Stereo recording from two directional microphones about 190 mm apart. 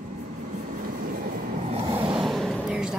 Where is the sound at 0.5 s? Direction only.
45° right (ahead or behind).